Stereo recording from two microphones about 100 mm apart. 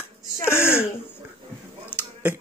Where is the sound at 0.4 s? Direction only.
25° left (ahead or behind).